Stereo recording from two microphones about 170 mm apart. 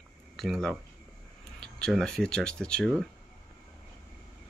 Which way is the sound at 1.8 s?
5° left (ahead or behind).